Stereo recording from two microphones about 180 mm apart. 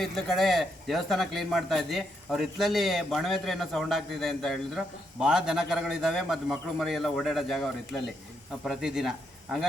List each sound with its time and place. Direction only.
0.0 s a man's voice: centre (ahead or behind)